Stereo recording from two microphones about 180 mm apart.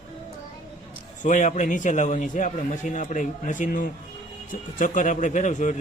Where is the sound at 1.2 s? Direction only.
45° left (ahead or behind).